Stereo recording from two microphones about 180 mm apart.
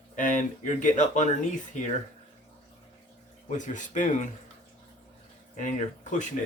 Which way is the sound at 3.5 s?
45° left (ahead or behind).